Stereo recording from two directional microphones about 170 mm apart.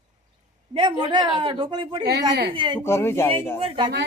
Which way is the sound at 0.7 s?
30° right (ahead or behind).